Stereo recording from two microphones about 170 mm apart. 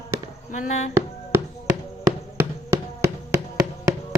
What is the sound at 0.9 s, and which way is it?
Music, 15° right (ahead or behind).